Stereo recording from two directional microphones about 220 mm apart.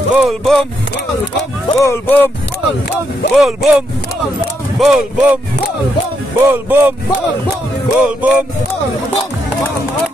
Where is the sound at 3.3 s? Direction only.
Centre (ahead or behind).